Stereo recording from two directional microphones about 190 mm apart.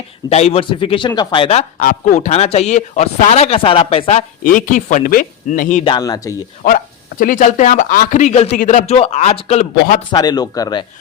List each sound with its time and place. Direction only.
0.3 s speech: 35° left (ahead or behind)
1.8 s a man's voice: 45° left (ahead or behind)
4.4 s speech: 45° left (ahead or behind)
5.8 s speech: 20° left (ahead or behind)
7.2 s a man's voice: 40° left (ahead or behind)
10.1 s speech: 20° left (ahead or behind)